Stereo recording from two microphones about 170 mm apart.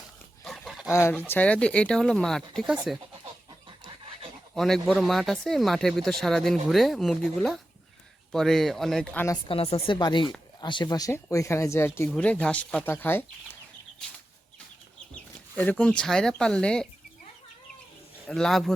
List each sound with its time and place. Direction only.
0.4 s dog: centre (ahead or behind)
0.9 s speech: 15° left (ahead or behind); by 3.0 s centre (ahead or behind)
4.5 s speech: centre (ahead or behind)
9.5 s speech: 35° left (ahead or behind); by 13.6 s 10° left (ahead or behind)
15.1 s speech: 10° left (ahead or behind)
18.3 s speech: 5° left (ahead or behind)